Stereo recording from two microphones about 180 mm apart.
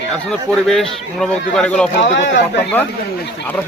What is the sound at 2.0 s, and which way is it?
Speech, 80° left.